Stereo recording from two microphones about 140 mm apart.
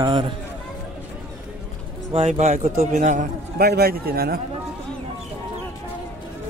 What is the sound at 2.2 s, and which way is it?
A man's voice, 55° right (ahead or behind).